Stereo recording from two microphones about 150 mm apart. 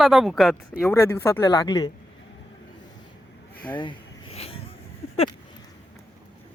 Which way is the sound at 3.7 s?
35° left (ahead or behind).